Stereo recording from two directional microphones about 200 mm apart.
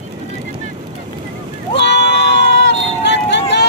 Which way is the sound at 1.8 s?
60° left (ahead or behind).